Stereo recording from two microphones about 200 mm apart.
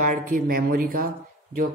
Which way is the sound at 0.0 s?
40° right (ahead or behind).